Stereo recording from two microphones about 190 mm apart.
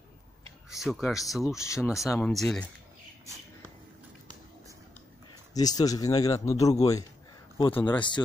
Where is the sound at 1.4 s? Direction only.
15° left (ahead or behind).